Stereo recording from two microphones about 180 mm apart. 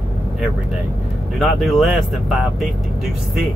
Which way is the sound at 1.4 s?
Centre (ahead or behind).